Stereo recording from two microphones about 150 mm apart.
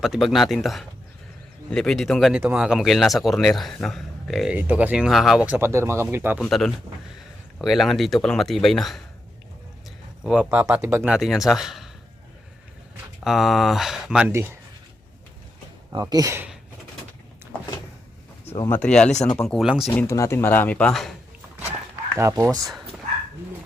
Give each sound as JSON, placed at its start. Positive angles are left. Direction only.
{"t": 0.0, "sound": "speech", "side_deg": 0}
{"t": 5.5, "sound": "speech", "side_deg": -15}
{"t": 6.4, "sound": "speech", "side_deg": 0}
{"t": 10.2, "sound": "speech", "side_deg": -5}
{"t": 11.0, "sound": "speech", "side_deg": -5}
{"t": 13.2, "sound": "speech", "side_deg": 0}
{"t": 14.3, "sound": "speech", "side_deg": -15}
{"t": 15.9, "sound": "speech", "side_deg": -25}
{"t": 18.7, "sound": "speech", "side_deg": 10}
{"t": 19.6, "sound": "speech", "side_deg": -5}
{"t": 19.9, "sound": "speech", "side_deg": 10}
{"t": 22.1, "sound": "speech", "side_deg": -20}